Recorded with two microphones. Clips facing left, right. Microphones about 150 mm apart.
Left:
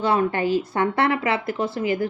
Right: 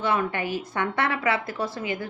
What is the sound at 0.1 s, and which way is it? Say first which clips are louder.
A woman's voice: left 7 dB; 35° left (ahead or behind).